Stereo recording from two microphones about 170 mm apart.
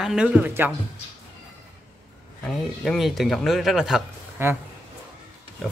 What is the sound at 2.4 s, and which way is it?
Speech, centre (ahead or behind).